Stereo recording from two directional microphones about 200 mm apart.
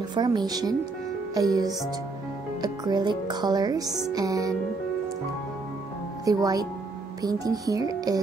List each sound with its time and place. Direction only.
0.1 s speech: 20° right (ahead or behind)
1.3 s music: 20° right (ahead or behind)
2.6 s speech: 20° right (ahead or behind)
4.1 s music: 20° right (ahead or behind)
6.2 s speech: 20° right (ahead or behind)
7.2 s music: 20° right (ahead or behind)